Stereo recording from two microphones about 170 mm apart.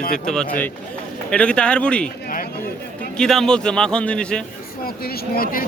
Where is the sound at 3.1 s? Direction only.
5° left (ahead or behind).